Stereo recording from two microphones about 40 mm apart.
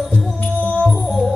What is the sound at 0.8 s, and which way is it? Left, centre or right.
Music, centre.